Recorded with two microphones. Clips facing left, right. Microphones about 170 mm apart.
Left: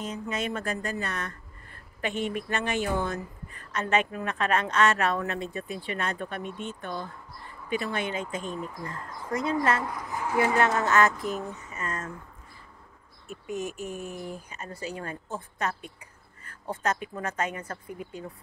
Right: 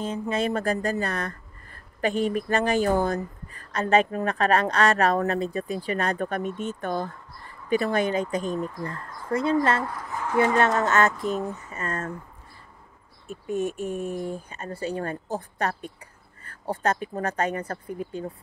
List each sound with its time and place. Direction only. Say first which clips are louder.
0.0 s speech: right 6 dB; 30° right (ahead or behind)
9.3 s speech: right 4 dB; 30° right (ahead or behind)
9.8 s speech: right 1 dB; 10° left (ahead or behind)
10.8 s speech: right 1 dB; 25° right (ahead or behind)
13.7 s mantra: right 6 dB; centre (ahead or behind)
14.1 s speech: right 6 dB; 30° right (ahead or behind)